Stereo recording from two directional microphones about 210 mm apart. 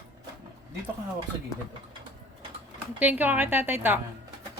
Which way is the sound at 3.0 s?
5° right (ahead or behind).